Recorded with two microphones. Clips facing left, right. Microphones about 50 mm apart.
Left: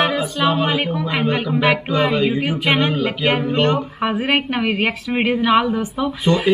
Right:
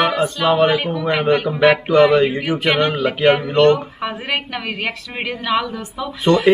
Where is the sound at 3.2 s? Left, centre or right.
Left.